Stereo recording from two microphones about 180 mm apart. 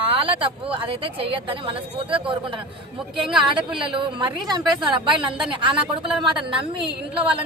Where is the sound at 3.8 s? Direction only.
25° right (ahead or behind).